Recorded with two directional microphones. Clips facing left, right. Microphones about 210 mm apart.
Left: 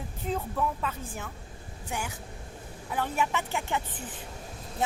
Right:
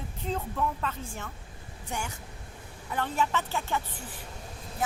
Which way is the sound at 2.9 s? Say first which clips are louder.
Even; 10° left (ahead or behind).